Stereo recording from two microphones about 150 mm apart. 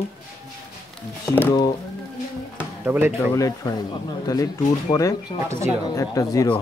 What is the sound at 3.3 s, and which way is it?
Speech, 25° left (ahead or behind).